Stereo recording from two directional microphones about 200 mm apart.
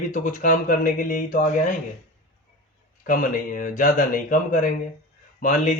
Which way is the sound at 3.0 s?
40° left (ahead or behind).